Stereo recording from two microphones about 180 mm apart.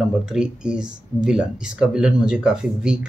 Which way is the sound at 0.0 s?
5° right (ahead or behind).